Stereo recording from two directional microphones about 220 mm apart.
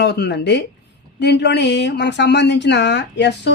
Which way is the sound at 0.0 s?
50° left (ahead or behind).